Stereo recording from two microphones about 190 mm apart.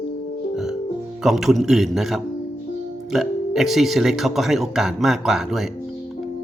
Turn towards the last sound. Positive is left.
turn(degrees=0)  # may be behind; listen again after turning